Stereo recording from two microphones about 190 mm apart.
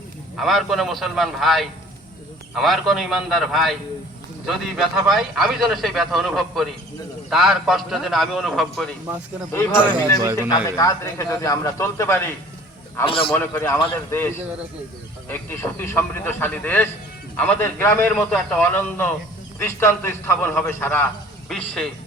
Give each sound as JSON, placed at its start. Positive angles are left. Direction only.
{"t": 0.3, "sound": "a man's voice", "side_deg": 0}
{"t": 9.5, "sound": "a man's voice", "side_deg": 10}
{"t": 9.8, "sound": "a man's voice", "side_deg": -25}
{"t": 10.8, "sound": "a man's voice", "side_deg": 15}
{"t": 13.1, "sound": "a man's voice", "side_deg": 30}
{"t": 13.3, "sound": "a man's voice", "side_deg": 10}